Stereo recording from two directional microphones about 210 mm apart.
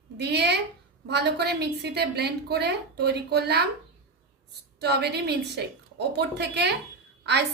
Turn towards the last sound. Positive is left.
turn(degrees=-55)  # may be behind; listen again after turning